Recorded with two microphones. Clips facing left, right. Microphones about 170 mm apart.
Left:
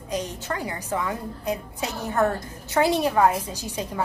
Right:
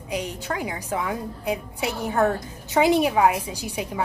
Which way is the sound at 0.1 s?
10° right (ahead or behind).